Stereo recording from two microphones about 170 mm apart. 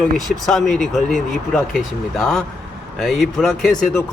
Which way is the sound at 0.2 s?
Centre (ahead or behind).